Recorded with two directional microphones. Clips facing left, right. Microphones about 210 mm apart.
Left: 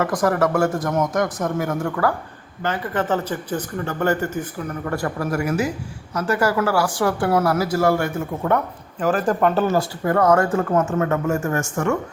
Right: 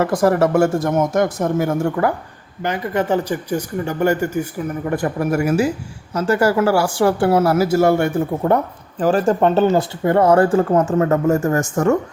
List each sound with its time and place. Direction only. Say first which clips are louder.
0.0 s speech: right 4 dB; 30° right (ahead or behind)
2.6 s speech: right 3 dB; 15° right (ahead or behind); by 11.6 s 35° right (ahead or behind)